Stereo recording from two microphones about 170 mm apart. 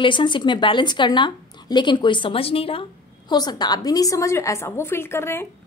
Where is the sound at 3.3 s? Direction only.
25° left (ahead or behind).